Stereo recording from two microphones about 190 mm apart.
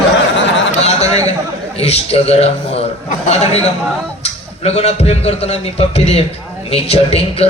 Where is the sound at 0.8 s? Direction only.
35° left (ahead or behind).